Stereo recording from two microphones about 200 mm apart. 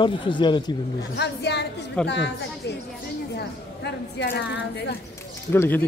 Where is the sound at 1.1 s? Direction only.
55° left (ahead or behind).